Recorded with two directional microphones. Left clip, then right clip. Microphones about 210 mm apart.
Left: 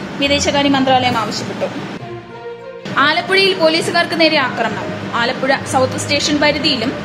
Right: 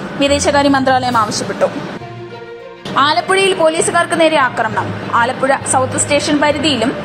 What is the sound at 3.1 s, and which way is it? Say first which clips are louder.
A woman's voice: right 1 dB; 10° right (ahead or behind).